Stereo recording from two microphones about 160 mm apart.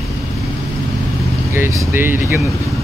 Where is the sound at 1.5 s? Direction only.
15° right (ahead or behind).